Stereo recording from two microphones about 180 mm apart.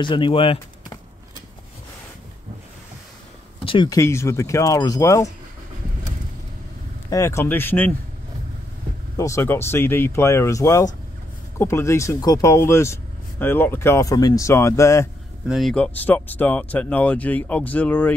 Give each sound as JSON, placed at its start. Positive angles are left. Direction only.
{"t": 0.0, "sound": "speech", "side_deg": 25}
{"t": 3.5, "sound": "speech", "side_deg": 30}
{"t": 4.0, "sound": "speech", "side_deg": 15}
{"t": 7.1, "sound": "speech", "side_deg": 15}
{"t": 9.1, "sound": "speech", "side_deg": 15}
{"t": 15.4, "sound": "speech", "side_deg": 0}